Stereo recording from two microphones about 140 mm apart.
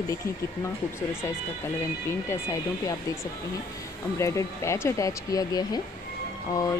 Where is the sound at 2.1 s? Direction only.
20° left (ahead or behind).